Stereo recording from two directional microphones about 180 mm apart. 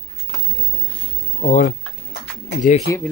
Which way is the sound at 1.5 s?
45° left (ahead or behind).